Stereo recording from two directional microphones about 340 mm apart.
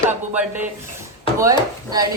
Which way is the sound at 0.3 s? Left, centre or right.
Centre.